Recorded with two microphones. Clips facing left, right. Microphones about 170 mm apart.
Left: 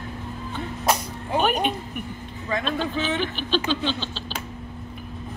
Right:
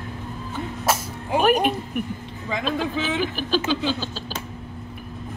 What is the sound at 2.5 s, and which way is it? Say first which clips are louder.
Speech: right 1 dB; 10° right (ahead or behind).